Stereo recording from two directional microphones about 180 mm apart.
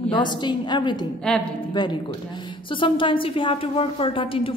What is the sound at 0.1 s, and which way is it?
A woman's voice, 25° left (ahead or behind).